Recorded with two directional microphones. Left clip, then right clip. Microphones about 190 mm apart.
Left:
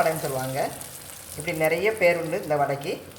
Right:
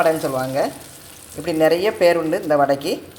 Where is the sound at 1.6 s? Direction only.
50° right (ahead or behind).